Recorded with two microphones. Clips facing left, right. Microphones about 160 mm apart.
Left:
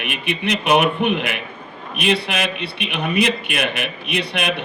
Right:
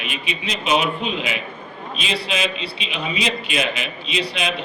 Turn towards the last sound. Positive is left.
turn(degrees=60)  # may be behind; listen again after turning